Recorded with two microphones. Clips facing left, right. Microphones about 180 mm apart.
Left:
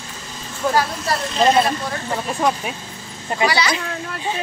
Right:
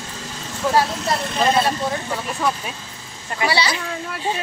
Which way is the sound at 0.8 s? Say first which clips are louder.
Right 3 dB; 20° right (ahead or behind).